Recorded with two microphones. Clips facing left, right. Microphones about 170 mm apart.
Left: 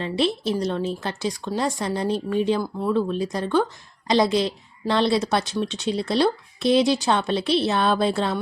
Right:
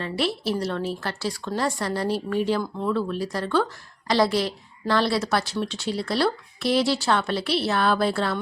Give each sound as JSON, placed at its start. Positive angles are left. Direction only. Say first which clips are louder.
{"t": 0.0, "sound": "a woman's voice", "louder": "left 3 dB", "side_deg": 20}